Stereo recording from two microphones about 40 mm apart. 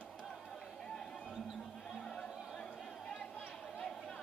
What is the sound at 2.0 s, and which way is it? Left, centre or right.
Music, left.